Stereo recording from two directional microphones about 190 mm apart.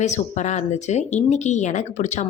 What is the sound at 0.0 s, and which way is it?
Speech, 40° left (ahead or behind).